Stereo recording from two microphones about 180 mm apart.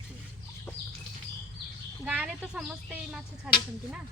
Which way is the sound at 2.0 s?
5° right (ahead or behind).